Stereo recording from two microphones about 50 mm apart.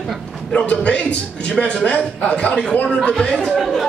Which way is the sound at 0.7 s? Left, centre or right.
Left.